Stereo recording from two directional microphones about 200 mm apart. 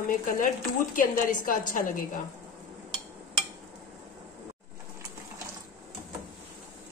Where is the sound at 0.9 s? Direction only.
40° left (ahead or behind).